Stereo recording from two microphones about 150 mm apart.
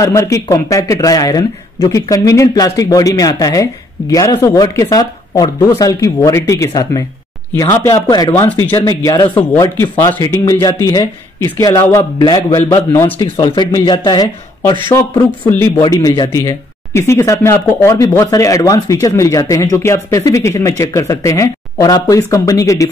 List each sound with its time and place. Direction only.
0.0 s speech: 20° left (ahead or behind)
12.0 s a man's voice: 30° left (ahead or behind)
12.9 s speech: 20° left (ahead or behind)
13.4 s a man's voice: 30° left (ahead or behind)
15.8 s speech: 25° left (ahead or behind)